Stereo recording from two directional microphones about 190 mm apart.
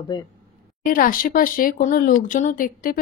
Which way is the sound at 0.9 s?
45° left (ahead or behind).